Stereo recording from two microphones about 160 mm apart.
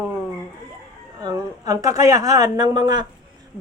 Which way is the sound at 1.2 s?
20° right (ahead or behind).